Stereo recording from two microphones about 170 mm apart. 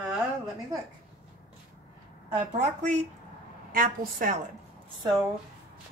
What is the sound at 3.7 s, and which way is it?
Speech, 55° right (ahead or behind).